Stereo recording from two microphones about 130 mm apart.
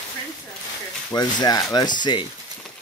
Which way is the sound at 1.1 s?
30° left (ahead or behind).